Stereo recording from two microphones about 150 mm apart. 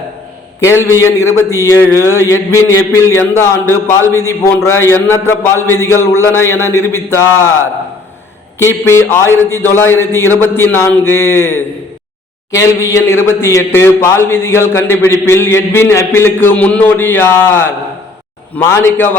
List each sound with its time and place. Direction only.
0.9 s a sound: 15° left (ahead or behind)
1.8 s a man's voice: 15° left (ahead or behind)
8.5 s a man's voice: 15° left (ahead or behind)